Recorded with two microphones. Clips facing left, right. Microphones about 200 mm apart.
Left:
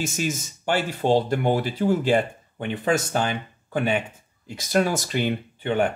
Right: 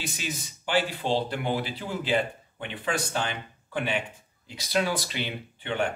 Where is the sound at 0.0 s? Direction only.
45° left (ahead or behind).